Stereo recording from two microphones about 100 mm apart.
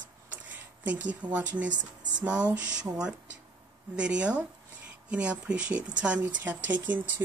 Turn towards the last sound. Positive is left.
turn(degrees=-15)  # may be behind; listen again after turning